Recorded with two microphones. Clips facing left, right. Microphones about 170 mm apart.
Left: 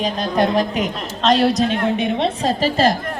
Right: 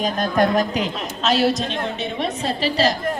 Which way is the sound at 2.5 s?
45° left (ahead or behind).